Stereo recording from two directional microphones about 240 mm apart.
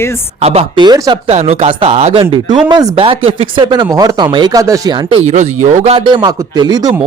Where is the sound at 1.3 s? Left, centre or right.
Right.